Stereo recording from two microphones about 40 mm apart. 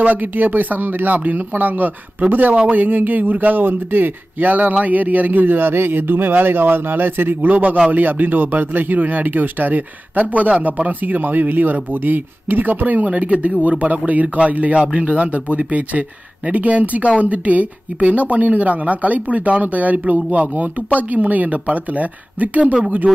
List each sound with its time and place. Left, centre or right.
0.0 s speech: right
7.5 s speech: right